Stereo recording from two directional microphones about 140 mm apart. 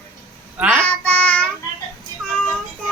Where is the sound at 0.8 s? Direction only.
10° left (ahead or behind).